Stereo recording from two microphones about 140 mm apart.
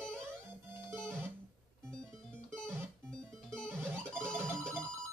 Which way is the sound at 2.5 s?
5° left (ahead or behind).